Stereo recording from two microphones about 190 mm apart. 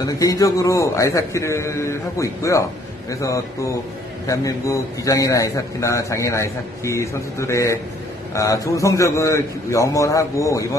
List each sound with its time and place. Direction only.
0.2 s a man's voice: 20° left (ahead or behind)